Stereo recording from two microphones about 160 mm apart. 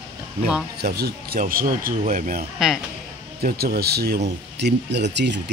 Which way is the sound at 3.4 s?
75° right (ahead or behind).